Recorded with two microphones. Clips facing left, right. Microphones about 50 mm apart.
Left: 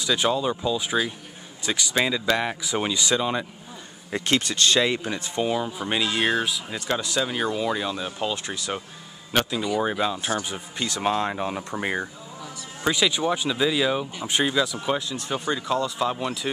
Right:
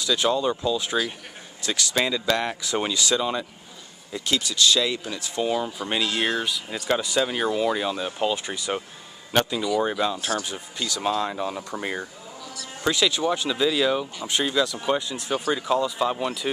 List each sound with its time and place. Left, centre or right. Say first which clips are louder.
0.0 s speech: even; centre
4.1 s speech: left 3 dB; left
4.8 s speech: left 3 dB; left
5.4 s speech: right 1 dB; centre
10.1 s speech: even; left; by 16.4 s centre